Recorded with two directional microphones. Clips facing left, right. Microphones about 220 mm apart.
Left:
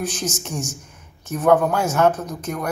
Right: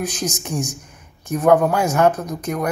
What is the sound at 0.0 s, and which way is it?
Speech, 15° right (ahead or behind).